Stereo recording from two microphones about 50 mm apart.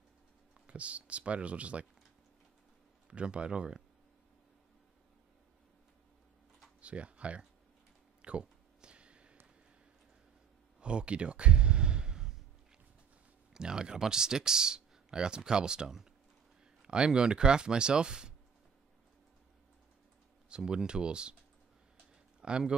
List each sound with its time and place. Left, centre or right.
0.7 s speech: right
3.1 s speech: right
6.8 s speech: right
8.2 s a sound: right
10.8 s a sound: right
13.5 s speech: centre
20.4 s speech: centre
22.4 s speech: centre